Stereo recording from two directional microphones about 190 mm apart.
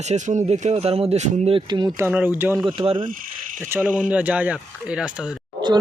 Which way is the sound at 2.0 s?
10° right (ahead or behind).